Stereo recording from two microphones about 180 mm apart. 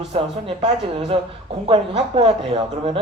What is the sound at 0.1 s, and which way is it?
Speech, 30° right (ahead or behind).